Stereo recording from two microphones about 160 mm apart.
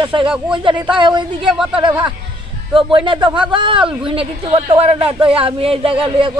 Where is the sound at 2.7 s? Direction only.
30° right (ahead or behind).